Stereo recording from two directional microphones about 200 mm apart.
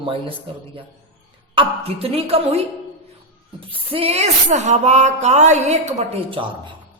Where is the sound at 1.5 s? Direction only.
30° right (ahead or behind).